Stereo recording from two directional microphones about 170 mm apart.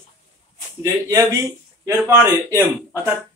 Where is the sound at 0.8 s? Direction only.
15° right (ahead or behind).